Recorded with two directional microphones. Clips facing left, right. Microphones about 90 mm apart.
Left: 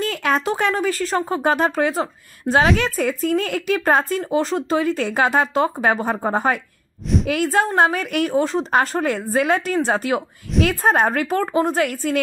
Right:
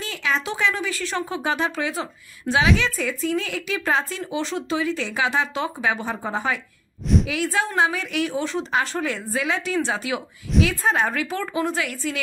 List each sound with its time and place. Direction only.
0.0 s speech: 50° left (ahead or behind)